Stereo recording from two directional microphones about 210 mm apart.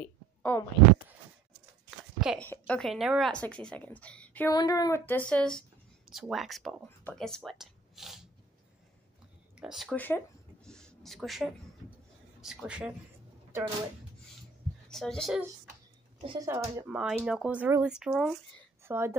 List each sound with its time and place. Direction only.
0.0 s a sound: 10° left (ahead or behind)
1.9 s speech: centre (ahead or behind)
9.6 s a sound: centre (ahead or behind)
12.4 s speech: 5° right (ahead or behind)
14.9 s a child's voice: centre (ahead or behind)
16.2 s a woman's voice: 25° right (ahead or behind)